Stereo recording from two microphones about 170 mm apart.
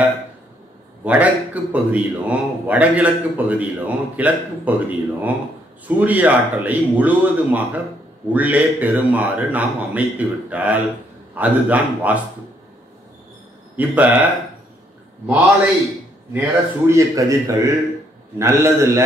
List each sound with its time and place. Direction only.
1.0 s speech: 10° right (ahead or behind)
13.7 s speech: 10° right (ahead or behind)
16.3 s speech: 15° right (ahead or behind)